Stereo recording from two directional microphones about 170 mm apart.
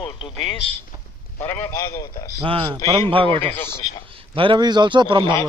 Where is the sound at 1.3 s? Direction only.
15° left (ahead or behind).